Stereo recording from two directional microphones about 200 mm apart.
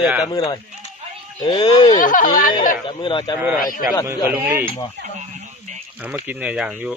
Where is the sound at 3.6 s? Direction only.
45° left (ahead or behind).